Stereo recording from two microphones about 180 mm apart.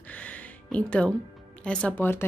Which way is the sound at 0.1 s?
10° left (ahead or behind).